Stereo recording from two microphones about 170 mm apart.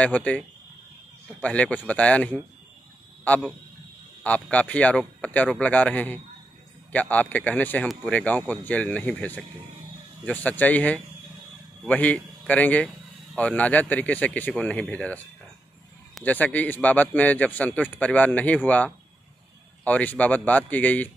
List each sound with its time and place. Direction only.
0.0 s a man's voice: 10° left (ahead or behind)